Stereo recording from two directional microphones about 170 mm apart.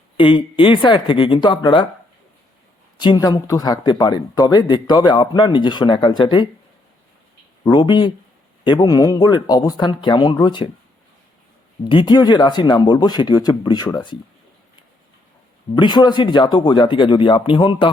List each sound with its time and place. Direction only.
0.2 s speech: 30° left (ahead or behind)
3.0 s speech: 25° left (ahead or behind)
7.6 s speech: 25° left (ahead or behind)
11.9 s speech: 25° left (ahead or behind)
15.7 s speech: 25° left (ahead or behind)